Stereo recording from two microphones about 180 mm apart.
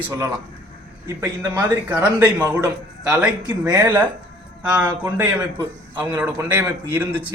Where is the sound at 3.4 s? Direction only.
15° right (ahead or behind).